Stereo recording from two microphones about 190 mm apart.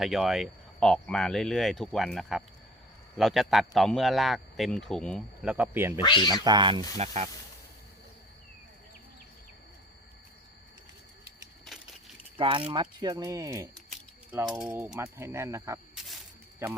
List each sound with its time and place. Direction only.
0.0 s speech: centre (ahead or behind)
5.5 s speech: 10° right (ahead or behind)
6.0 s speech: 25° left (ahead or behind)
6.4 s speech: 25° right (ahead or behind)
6.9 s speech: 35° right (ahead or behind)
12.4 s speech: 30° right (ahead or behind)